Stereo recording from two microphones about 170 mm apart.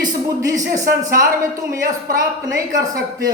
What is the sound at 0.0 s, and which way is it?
Speech, 20° right (ahead or behind).